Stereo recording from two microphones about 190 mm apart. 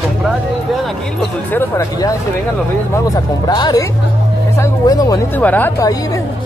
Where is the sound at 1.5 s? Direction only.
15° left (ahead or behind).